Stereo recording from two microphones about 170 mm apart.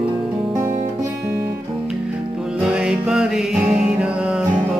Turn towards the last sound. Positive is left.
turn(degrees=-5)  # may be behind; listen again after turning